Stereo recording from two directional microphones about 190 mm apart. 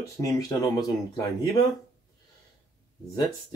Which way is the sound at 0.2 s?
20° left (ahead or behind).